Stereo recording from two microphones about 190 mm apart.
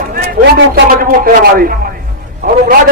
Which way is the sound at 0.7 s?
45° right (ahead or behind).